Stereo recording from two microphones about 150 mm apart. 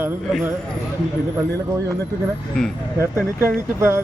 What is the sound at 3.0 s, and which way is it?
A man's voice, 15° right (ahead or behind).